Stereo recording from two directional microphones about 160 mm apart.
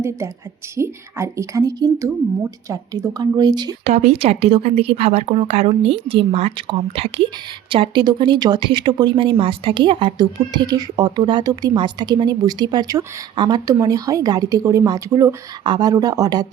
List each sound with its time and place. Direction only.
0.8 s speech: 20° right (ahead or behind)
3.8 s speech: 40° right (ahead or behind); by 16.5 s 25° right (ahead or behind)